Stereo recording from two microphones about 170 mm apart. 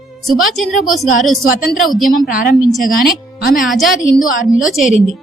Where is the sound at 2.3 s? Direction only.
55° left (ahead or behind).